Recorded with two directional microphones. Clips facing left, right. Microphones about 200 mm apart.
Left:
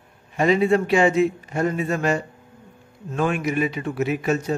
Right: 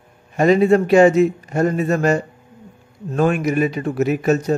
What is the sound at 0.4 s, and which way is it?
A man's voice, 45° right (ahead or behind).